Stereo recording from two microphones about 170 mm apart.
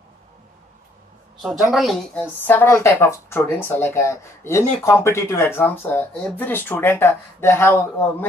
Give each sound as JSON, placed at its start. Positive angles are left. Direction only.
{"t": 1.4, "sound": "a woman's voice", "side_deg": 0}
{"t": 2.4, "sound": "speech", "side_deg": 10}